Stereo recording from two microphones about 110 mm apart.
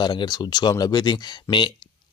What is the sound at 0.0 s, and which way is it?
Speech, 45° left (ahead or behind).